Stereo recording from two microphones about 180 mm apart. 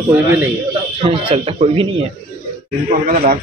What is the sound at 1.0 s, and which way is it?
Speech, 30° right (ahead or behind).